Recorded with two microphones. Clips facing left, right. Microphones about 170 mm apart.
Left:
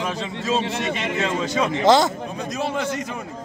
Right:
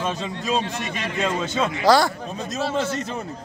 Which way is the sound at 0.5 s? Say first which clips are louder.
Left 2 dB; 20° left (ahead or behind).